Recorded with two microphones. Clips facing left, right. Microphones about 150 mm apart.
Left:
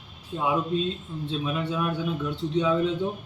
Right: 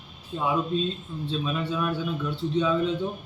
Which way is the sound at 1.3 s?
15° left (ahead or behind).